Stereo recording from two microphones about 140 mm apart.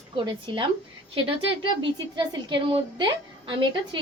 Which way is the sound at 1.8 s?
35° right (ahead or behind).